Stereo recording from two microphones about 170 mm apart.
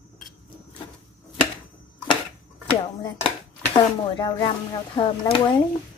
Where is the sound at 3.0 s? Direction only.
25° left (ahead or behind).